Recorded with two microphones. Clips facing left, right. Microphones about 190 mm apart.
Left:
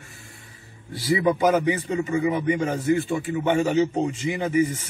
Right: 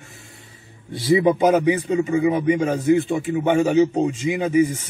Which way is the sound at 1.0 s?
20° right (ahead or behind).